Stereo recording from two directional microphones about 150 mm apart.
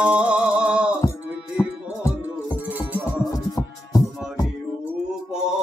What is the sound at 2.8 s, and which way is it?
Music, 10° right (ahead or behind).